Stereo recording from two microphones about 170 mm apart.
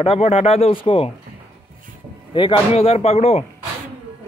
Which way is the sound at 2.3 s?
30° left (ahead or behind).